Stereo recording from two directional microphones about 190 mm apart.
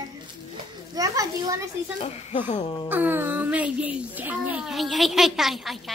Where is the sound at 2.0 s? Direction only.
25° left (ahead or behind).